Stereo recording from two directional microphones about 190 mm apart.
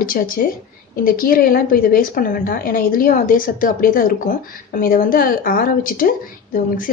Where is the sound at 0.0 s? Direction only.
50° left (ahead or behind).